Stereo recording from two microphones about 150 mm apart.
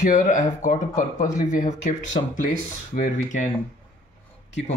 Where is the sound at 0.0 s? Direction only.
55° left (ahead or behind).